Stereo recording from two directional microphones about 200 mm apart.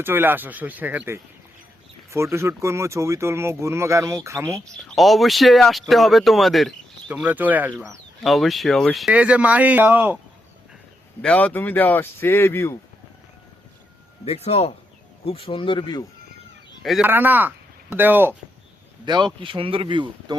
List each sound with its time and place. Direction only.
0.0 s speech: 10° right (ahead or behind)
4.9 s speech: centre (ahead or behind)
11.2 s speech: 5° left (ahead or behind)
14.3 s speech: 30° left (ahead or behind)
16.8 s speech: 5° right (ahead or behind)
19.0 s speech: 20° right (ahead or behind)